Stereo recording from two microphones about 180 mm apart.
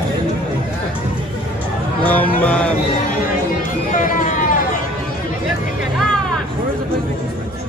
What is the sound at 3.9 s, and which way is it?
Vehicle, 45° left (ahead or behind).